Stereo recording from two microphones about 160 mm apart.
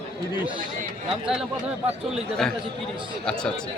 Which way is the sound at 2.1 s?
5° left (ahead or behind).